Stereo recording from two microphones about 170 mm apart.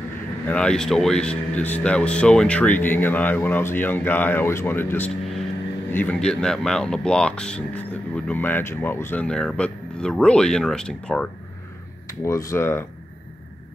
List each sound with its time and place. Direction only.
0.5 s speech: 5° left (ahead or behind)
12.1 s speech: 20° left (ahead or behind)